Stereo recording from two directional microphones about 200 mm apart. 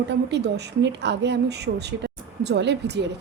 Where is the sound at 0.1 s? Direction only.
60° right (ahead or behind).